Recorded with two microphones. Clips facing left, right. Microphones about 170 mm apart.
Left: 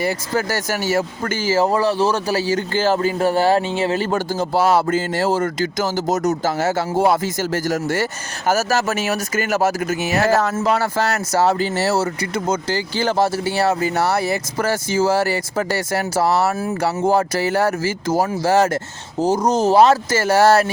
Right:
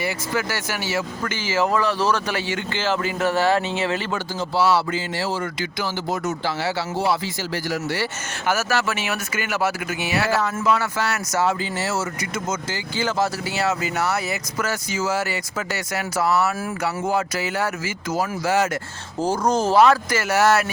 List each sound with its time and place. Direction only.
0.0 s speech: 40° left (ahead or behind)
19.7 s speech: 25° left (ahead or behind)